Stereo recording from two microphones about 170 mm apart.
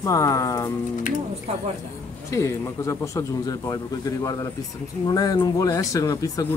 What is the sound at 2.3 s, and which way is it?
Speech, 15° left (ahead or behind).